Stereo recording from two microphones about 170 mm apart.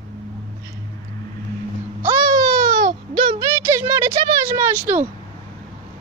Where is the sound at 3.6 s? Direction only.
15° right (ahead or behind).